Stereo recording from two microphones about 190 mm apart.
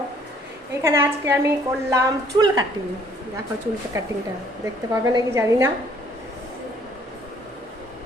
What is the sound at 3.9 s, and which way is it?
Speech, 15° right (ahead or behind).